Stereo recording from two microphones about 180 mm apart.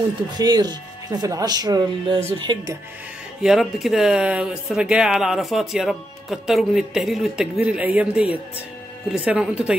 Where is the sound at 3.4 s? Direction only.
Centre (ahead or behind).